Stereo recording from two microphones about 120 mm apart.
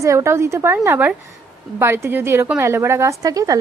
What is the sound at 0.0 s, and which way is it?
A woman's voice, 25° right (ahead or behind).